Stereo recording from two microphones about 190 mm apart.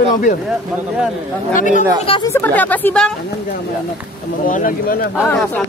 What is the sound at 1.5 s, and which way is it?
Speech, 45° left (ahead or behind).